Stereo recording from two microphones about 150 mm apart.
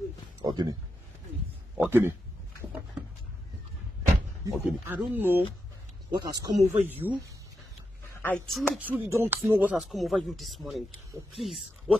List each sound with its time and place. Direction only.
0.4 s a sound: 25° right (ahead or behind)
1.8 s a sound: 15° right (ahead or behind)
4.5 s speech: 15° right (ahead or behind)
6.1 s speech: 25° right (ahead or behind)
6.9 s speech: 10° right (ahead or behind)
8.2 s speech: 10° left (ahead or behind)
8.8 s speech: 15° right (ahead or behind)